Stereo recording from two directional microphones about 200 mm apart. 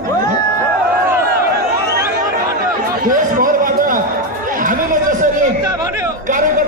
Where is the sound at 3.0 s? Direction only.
45° right (ahead or behind).